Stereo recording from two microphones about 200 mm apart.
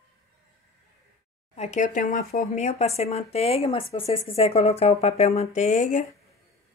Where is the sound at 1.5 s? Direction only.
35° left (ahead or behind).